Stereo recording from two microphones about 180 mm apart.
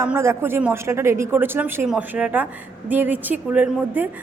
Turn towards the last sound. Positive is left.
turn(degrees=-5)  # may be behind; listen again after turning